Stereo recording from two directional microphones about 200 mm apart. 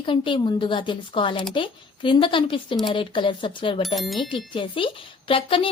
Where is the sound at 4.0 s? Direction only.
Centre (ahead or behind).